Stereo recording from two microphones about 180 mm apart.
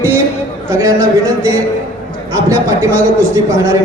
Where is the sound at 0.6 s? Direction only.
15° right (ahead or behind).